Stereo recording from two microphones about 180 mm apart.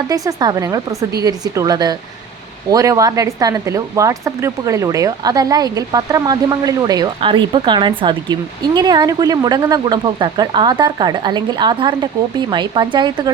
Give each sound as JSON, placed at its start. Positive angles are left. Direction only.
{"t": 0.1, "sound": "speech", "side_deg": -20}